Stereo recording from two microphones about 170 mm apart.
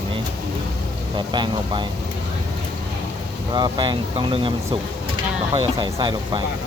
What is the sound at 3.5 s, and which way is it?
Speech, 25° right (ahead or behind).